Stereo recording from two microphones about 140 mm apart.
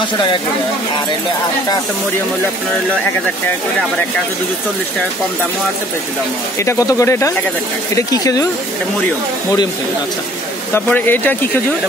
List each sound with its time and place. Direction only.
6.6 s speech: 20° left (ahead or behind)
10.7 s speech: 15° left (ahead or behind)